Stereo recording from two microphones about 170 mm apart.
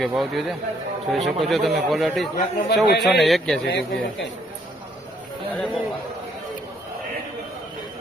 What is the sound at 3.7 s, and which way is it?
Speech, 85° left.